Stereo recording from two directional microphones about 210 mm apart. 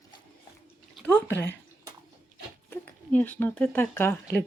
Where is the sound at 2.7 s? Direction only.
10° left (ahead or behind).